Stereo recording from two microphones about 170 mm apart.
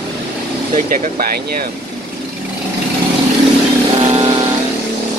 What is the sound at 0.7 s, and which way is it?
Speech, 50° right (ahead or behind).